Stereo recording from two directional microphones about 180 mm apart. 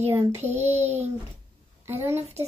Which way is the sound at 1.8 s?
15° right (ahead or behind).